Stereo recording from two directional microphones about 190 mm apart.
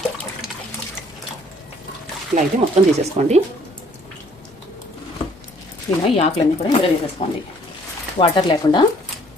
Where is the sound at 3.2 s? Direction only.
35° right (ahead or behind).